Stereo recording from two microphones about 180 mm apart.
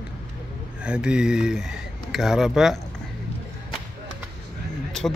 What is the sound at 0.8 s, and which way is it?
Speech, 5° right (ahead or behind).